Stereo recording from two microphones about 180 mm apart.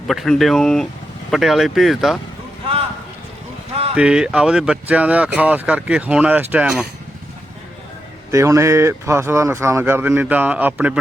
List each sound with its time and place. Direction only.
0.1 s speech: centre (ahead or behind)
3.9 s speech: 5° right (ahead or behind)
8.3 s speech: 15° right (ahead or behind)